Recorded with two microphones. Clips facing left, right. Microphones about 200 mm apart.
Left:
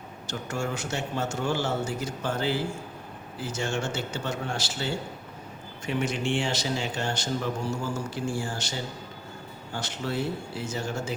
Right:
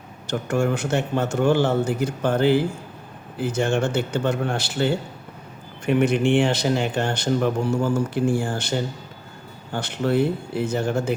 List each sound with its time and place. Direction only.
0.3 s a man's voice: 55° right (ahead or behind)